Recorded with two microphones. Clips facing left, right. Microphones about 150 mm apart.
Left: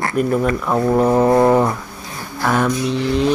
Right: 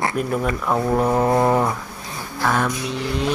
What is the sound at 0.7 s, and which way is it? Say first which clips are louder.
Mantra: left 4 dB; 5° left (ahead or behind).